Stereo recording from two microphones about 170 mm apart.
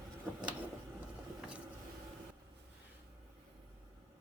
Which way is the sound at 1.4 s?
5° right (ahead or behind).